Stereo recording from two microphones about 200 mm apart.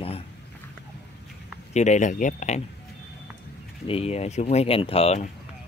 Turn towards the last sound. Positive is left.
turn(degrees=30)  # may be behind; listen again after turning